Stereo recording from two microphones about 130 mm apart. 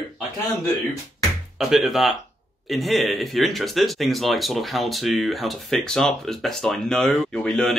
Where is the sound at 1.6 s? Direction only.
Centre (ahead or behind).